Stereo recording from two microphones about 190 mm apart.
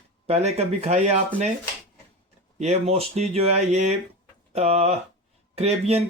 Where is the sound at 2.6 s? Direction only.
35° right (ahead or behind).